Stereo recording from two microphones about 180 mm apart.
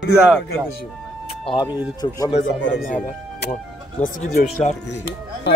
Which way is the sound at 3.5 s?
45° left (ahead or behind).